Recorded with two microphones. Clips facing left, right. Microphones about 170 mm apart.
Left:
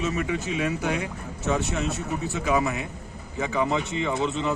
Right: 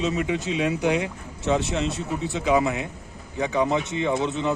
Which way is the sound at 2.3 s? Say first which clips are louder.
Right 3 dB; 15° right (ahead or behind).